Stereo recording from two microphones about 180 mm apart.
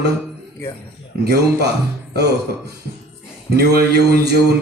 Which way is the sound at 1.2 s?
65° right (ahead or behind).